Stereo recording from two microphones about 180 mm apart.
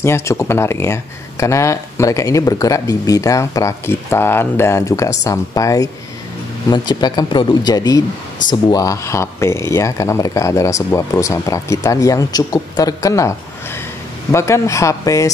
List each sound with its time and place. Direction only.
0.0 s speech: 15° left (ahead or behind)
14.3 s speech: 15° left (ahead or behind)